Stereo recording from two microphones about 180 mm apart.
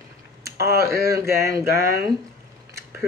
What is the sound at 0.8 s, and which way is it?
Speech, 15° right (ahead or behind).